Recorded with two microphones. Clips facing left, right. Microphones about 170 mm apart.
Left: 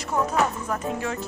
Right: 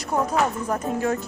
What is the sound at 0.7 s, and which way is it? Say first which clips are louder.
Speech: right 4 dB; 45° right (ahead or behind).